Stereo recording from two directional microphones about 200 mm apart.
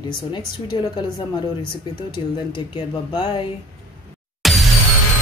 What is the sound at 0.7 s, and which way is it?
Speech, 25° left (ahead or behind).